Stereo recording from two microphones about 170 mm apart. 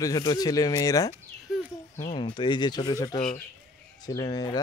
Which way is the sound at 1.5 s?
Centre (ahead or behind).